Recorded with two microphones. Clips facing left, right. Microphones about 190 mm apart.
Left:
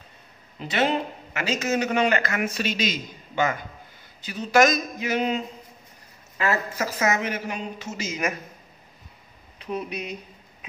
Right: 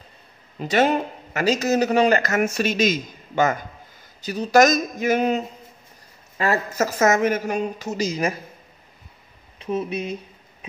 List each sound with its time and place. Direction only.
0.6 s a man's voice: 45° right (ahead or behind)
9.6 s speech: 25° right (ahead or behind)